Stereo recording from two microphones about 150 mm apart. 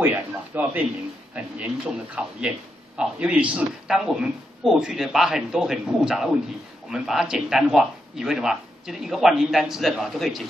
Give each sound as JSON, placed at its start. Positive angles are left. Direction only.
{"t": 0.0, "sound": "speech", "side_deg": -10}